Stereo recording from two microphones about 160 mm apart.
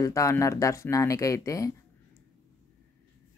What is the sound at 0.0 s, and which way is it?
Speech, 20° left (ahead or behind).